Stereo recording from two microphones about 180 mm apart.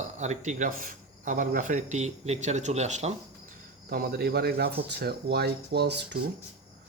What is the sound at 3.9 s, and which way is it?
Speech, 55° right (ahead or behind).